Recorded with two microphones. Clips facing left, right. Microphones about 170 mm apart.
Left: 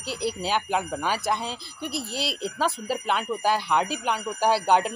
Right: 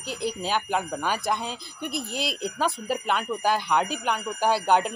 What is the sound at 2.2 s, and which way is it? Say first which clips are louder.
Speech: even; 45° right (ahead or behind).